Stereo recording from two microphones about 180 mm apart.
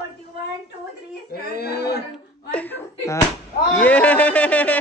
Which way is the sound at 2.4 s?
10° left (ahead or behind).